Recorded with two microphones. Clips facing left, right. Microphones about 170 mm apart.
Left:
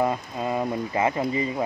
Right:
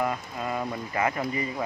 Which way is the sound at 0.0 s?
25° left (ahead or behind).